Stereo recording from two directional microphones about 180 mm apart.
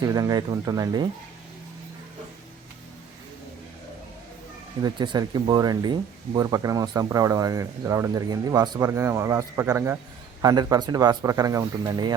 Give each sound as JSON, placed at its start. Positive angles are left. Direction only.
{"t": 0.0, "sound": "speech", "side_deg": -20}
{"t": 4.8, "sound": "speech", "side_deg": -25}